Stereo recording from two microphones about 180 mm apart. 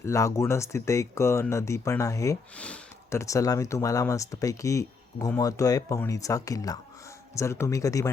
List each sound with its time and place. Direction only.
0.0 s speech: 15° left (ahead or behind)
2.6 s speech: 5° left (ahead or behind)